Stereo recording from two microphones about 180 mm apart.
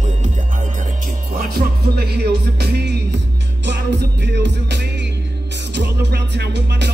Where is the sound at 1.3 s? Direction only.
60° right (ahead or behind).